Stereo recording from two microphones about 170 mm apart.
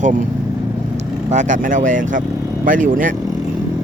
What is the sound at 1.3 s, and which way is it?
Speech, 45° right (ahead or behind).